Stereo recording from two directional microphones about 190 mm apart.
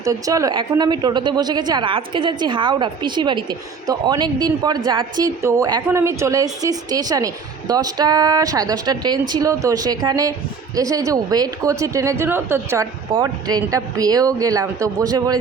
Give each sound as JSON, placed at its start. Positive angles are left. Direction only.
{"t": 0.0, "sound": "a woman's voice", "side_deg": -15}